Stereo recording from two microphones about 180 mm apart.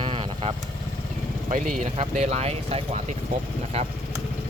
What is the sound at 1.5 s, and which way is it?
Speech, 45° right (ahead or behind).